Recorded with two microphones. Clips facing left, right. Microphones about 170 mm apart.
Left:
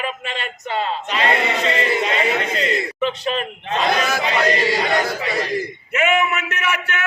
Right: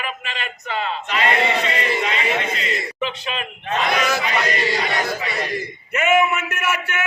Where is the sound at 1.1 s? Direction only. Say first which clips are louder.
Right 1 dB; 30° left (ahead or behind).